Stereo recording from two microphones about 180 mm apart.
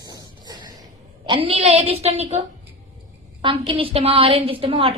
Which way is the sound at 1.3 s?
30° right (ahead or behind).